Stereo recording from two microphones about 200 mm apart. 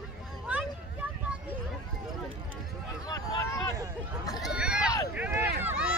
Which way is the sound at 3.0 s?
15° left (ahead or behind).